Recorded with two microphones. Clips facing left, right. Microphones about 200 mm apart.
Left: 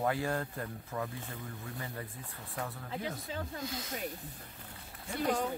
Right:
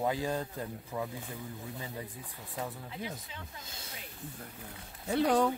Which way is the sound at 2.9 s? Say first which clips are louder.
Left 3 dB; 40° left (ahead or behind).